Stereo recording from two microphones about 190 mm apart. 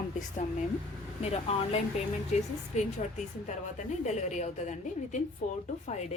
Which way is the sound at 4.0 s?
35° left (ahead or behind).